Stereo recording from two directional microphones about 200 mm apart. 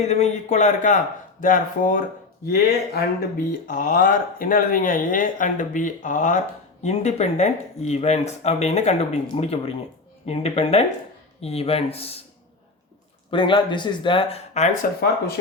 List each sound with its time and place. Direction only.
0.0 s speech: 35° left (ahead or behind)
13.3 s speech: 25° left (ahead or behind)